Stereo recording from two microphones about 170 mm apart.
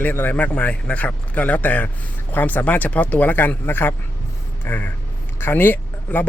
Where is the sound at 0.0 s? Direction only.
10° left (ahead or behind).